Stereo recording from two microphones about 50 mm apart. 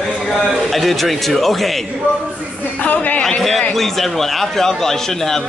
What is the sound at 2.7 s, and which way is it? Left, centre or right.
Speech, left.